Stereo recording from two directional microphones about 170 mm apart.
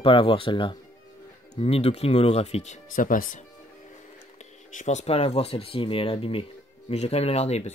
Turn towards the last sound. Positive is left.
turn(degrees=40)  # may be behind; listen again after turning